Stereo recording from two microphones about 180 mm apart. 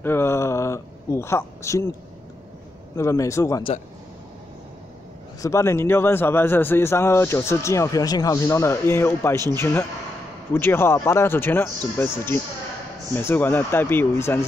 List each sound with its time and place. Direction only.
0.0 s a sound: 15° left (ahead or behind)
3.0 s a man's voice: 15° left (ahead or behind)
5.4 s a man's voice: 15° left (ahead or behind)